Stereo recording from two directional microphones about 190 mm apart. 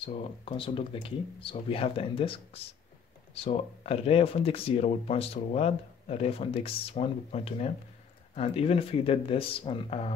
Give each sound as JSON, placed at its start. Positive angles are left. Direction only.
{"t": 0.0, "sound": "speech", "side_deg": 30}